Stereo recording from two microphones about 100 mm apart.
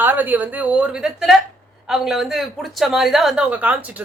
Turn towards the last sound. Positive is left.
turn(degrees=-15)  # may be behind; listen again after turning